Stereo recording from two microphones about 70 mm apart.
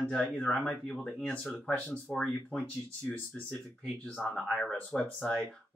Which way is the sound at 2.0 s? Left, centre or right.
Centre.